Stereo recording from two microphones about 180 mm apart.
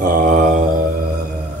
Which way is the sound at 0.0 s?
50° right (ahead or behind).